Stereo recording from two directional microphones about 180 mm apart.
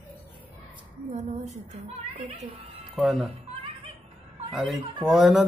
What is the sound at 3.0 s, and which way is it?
Speech, centre (ahead or behind).